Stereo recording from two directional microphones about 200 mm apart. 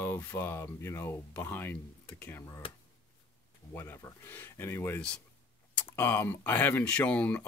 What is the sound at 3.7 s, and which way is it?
Speech, 10° left (ahead or behind).